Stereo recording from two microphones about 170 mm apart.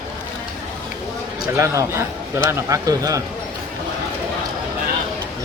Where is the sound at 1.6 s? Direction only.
15° right (ahead or behind).